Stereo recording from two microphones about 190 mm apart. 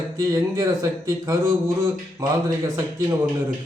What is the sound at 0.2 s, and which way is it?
A man's voice, 15° right (ahead or behind).